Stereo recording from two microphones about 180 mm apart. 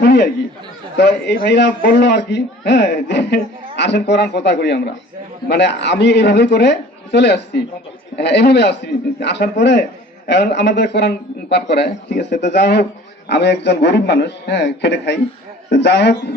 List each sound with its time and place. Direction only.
0.0 s chatter: 65° left (ahead or behind)
0.9 s a man's voice: 70° left (ahead or behind)